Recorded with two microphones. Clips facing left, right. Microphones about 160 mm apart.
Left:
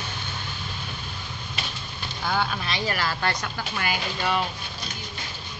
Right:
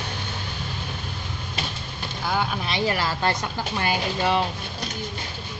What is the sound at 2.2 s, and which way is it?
Speech, 10° right (ahead or behind).